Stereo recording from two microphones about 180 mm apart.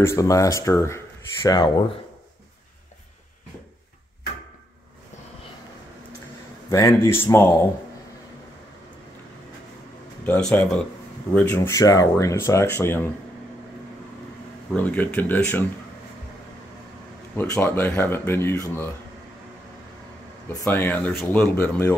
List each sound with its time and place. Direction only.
0.0 s speech: 15° left (ahead or behind)
6.7 s speech: 15° left (ahead or behind)
10.2 s speech: 10° left (ahead or behind)
14.7 s speech: 10° left (ahead or behind)
17.4 s speech: 10° left (ahead or behind)
20.6 s speech: 10° left (ahead or behind)